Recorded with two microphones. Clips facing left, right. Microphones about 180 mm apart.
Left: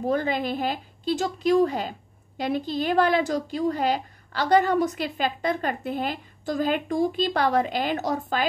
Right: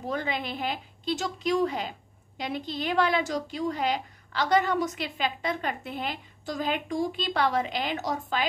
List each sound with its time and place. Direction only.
0.0 s a woman's voice: 40° left (ahead or behind)